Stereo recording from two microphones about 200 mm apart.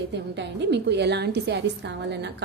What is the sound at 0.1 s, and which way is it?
A woman's voice, 60° right (ahead or behind).